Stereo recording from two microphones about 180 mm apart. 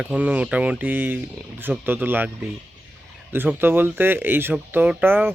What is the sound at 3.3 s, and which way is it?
Speech, 10° right (ahead or behind).